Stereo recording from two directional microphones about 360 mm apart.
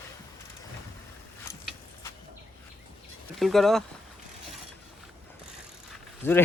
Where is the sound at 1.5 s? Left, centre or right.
Centre.